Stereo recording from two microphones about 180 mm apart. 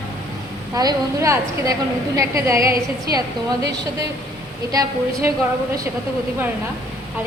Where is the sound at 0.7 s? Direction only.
20° right (ahead or behind).